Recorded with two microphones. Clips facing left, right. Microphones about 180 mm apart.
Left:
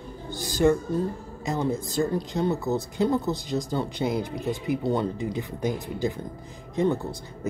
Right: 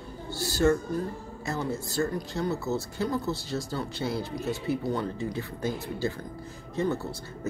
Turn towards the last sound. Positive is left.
turn(degrees=15)  # may be behind; listen again after turning